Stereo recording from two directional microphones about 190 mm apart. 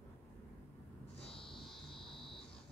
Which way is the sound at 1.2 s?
30° left (ahead or behind).